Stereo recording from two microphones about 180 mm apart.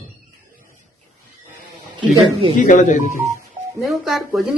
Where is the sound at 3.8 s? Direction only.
Centre (ahead or behind).